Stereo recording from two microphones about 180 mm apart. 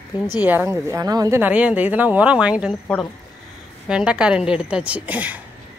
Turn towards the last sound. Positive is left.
turn(degrees=-10)  # may be behind; listen again after turning